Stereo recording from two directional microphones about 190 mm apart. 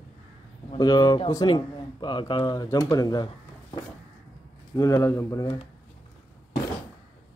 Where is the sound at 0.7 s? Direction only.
20° left (ahead or behind).